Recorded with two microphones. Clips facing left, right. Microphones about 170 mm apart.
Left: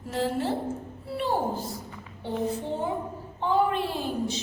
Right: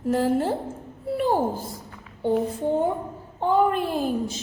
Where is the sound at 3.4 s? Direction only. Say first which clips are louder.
Right 4 dB; 50° right (ahead or behind).